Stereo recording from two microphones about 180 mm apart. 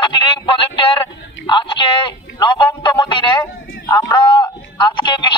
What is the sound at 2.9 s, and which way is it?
Speech, 25° left (ahead or behind).